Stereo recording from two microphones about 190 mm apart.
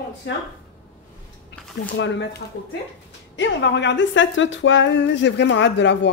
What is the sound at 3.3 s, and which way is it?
A woman's voice, 70° left (ahead or behind).